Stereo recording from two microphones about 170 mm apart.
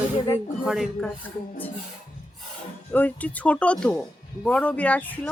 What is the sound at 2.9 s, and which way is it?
Speech, 10° left (ahead or behind).